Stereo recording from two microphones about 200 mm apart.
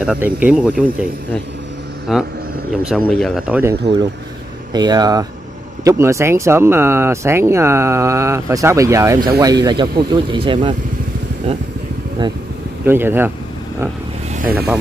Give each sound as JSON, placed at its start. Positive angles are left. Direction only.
{"t": 0.0, "sound": "speech", "side_deg": -5}
{"t": 2.1, "sound": "speech", "side_deg": 0}
{"t": 4.7, "sound": "speech", "side_deg": -20}
{"t": 12.8, "sound": "speech", "side_deg": -10}